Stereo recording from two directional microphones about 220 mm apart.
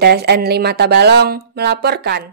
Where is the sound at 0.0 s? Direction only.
45° right (ahead or behind).